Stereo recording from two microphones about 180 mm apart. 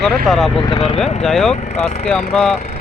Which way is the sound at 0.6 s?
30° left (ahead or behind).